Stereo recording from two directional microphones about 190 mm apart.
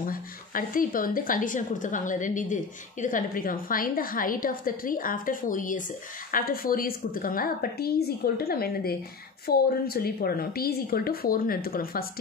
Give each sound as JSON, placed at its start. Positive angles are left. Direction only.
{"t": 0.0, "sound": "a woman's voice", "side_deg": 45}